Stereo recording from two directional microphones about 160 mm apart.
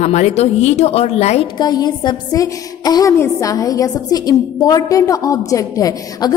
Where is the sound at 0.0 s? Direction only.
45° left (ahead or behind).